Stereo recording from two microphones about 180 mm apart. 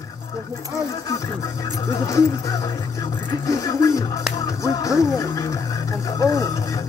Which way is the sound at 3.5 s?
20° left (ahead or behind).